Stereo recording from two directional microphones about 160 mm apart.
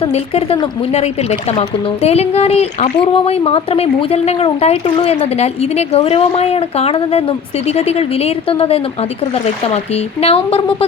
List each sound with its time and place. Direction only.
0.0 s speech: 40° left (ahead or behind)